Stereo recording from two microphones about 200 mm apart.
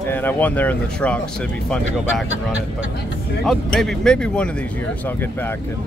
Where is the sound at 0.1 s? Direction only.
10° left (ahead or behind).